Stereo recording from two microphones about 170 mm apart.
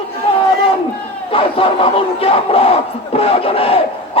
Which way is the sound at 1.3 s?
30° left (ahead or behind).